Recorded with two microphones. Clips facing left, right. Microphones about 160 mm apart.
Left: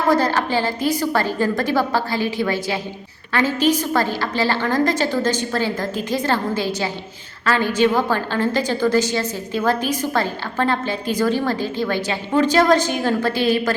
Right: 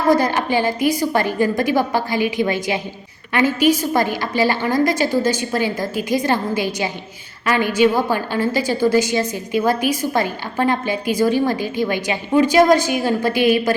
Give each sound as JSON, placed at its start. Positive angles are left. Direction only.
{"t": 0.1, "sound": "a woman's voice", "side_deg": -15}